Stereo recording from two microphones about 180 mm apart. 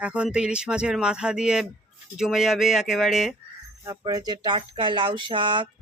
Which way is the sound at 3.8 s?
20° right (ahead or behind).